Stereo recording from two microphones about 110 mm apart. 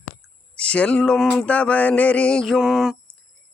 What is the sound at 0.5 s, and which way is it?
Speech, 10° left (ahead or behind).